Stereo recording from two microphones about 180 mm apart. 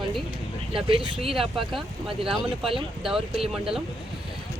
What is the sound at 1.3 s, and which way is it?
Speech, centre (ahead or behind).